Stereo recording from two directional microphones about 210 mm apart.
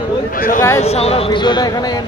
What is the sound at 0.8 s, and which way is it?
Speech, 30° left (ahead or behind).